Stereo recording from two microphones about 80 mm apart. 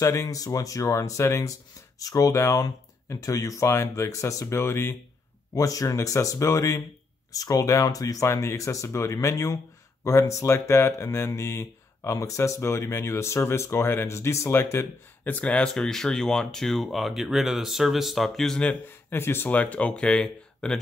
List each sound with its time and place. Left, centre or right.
0.0 s speech: left
5.5 s speech: left; by 18.6 s centre
19.0 s speech: left; by 20.8 s centre